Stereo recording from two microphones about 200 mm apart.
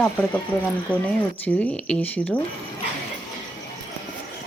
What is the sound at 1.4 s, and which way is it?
Speech, 10° left (ahead or behind).